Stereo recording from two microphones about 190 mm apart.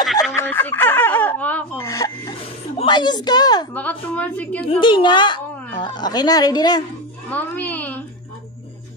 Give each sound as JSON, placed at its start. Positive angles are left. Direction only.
{"t": 0.0, "sound": "fowl", "side_deg": 0}
{"t": 0.4, "sound": "a sound", "side_deg": 10}
{"t": 2.8, "sound": "a woman's voice", "side_deg": 25}
{"t": 3.7, "sound": "a woman's voice", "side_deg": 10}
{"t": 4.6, "sound": "a woman's voice", "side_deg": 25}
{"t": 7.2, "sound": "a child's voice", "side_deg": 10}